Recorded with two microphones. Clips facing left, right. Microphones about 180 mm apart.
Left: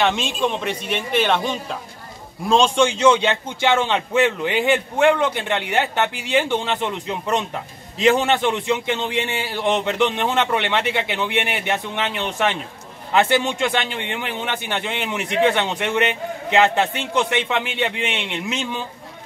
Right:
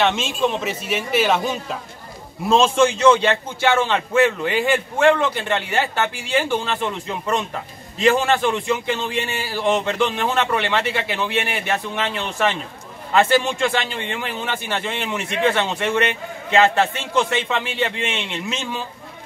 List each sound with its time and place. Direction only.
0.0 s speech: centre (ahead or behind)
3.2 s a man's voice: 15° left (ahead or behind)